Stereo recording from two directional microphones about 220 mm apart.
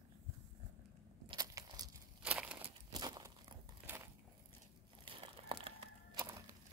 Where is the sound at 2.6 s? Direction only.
20° right (ahead or behind).